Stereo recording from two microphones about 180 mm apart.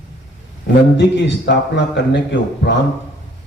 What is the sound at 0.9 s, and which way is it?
A man's voice, 75° left (ahead or behind).